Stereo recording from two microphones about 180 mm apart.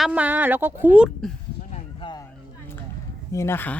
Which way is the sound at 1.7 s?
25° left (ahead or behind).